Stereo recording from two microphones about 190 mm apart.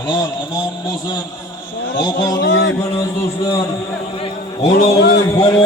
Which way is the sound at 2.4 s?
70° left (ahead or behind).